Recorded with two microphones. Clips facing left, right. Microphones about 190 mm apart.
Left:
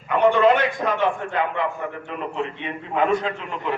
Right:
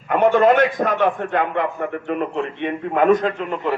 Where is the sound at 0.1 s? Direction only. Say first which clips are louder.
Right 2 dB; 50° right (ahead or behind).